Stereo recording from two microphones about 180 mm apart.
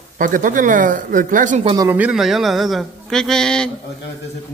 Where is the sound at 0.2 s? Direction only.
50° right (ahead or behind).